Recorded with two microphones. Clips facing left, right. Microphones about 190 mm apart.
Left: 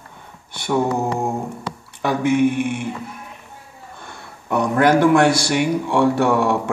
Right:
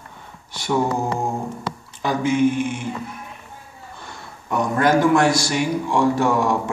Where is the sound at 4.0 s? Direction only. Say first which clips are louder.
Even; 60° left (ahead or behind).